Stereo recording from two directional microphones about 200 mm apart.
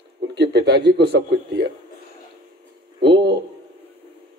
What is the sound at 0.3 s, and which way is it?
A man's voice, 60° right (ahead or behind).